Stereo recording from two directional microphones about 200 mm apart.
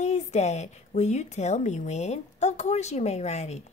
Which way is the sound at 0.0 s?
35° left (ahead or behind).